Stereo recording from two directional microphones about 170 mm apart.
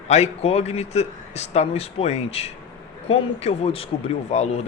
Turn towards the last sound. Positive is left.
turn(degrees=40)  # may be behind; listen again after turning